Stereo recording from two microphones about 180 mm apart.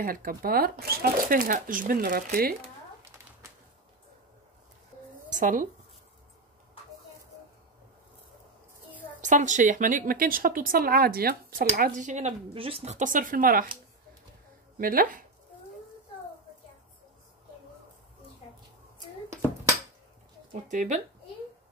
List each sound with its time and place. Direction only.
0.0 s speech: 50° right (ahead or behind)
5.3 s speech: 45° right (ahead or behind)
9.2 s speech: 45° right (ahead or behind)
14.8 s speech: 50° right (ahead or behind)
20.6 s speech: 45° right (ahead or behind)